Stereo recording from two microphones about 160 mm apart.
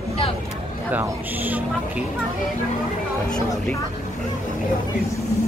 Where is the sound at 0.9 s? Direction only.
10° right (ahead or behind).